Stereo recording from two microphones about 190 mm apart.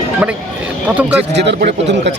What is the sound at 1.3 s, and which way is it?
Speech, 65° right (ahead or behind).